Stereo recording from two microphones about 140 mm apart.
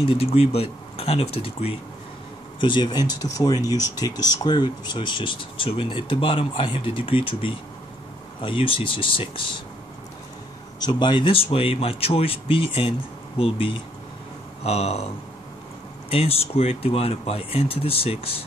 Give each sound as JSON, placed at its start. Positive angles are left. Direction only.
{"t": 0.0, "sound": "speech", "side_deg": 45}
{"t": 2.6, "sound": "speech", "side_deg": 35}
{"t": 10.8, "sound": "speech", "side_deg": 35}
{"t": 16.1, "sound": "speech", "side_deg": 45}